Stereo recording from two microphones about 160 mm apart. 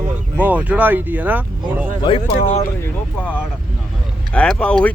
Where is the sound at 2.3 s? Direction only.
50° left (ahead or behind).